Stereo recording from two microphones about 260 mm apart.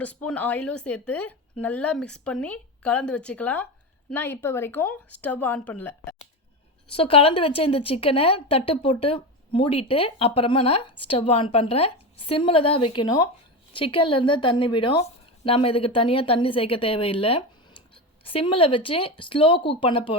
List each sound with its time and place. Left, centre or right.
0.0 s speech: centre
6.9 s a woman's voice: left